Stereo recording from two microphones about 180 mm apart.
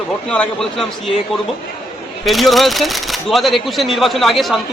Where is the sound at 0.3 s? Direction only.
5° left (ahead or behind).